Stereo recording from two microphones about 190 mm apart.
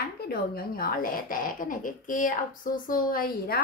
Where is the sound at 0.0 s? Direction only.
55° left (ahead or behind).